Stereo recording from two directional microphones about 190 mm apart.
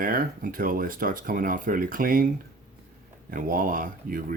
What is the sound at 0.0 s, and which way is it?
Speech, 45° right (ahead or behind).